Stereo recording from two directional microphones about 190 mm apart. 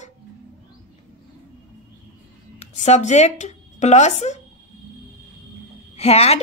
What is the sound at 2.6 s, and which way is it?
Speech, 35° left (ahead or behind).